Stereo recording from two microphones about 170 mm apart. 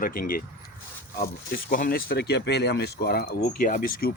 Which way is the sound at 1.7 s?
60° left (ahead or behind).